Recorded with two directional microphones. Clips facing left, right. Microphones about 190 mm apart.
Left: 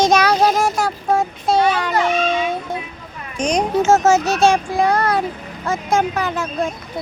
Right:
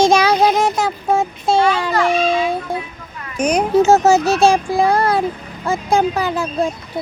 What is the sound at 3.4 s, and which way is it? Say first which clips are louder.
Speech: right 2 dB; 5° right (ahead or behind).